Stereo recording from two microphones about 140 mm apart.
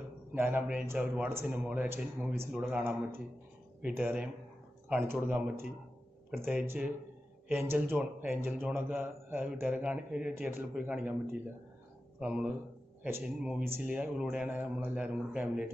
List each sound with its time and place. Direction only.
0.3 s speech: 15° right (ahead or behind)
6.4 s a man's voice: 15° right (ahead or behind)